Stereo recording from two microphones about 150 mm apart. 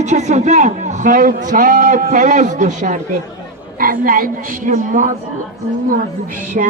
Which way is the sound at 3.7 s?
70° right (ahead or behind).